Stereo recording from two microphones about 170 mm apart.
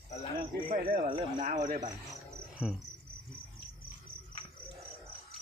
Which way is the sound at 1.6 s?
45° right (ahead or behind).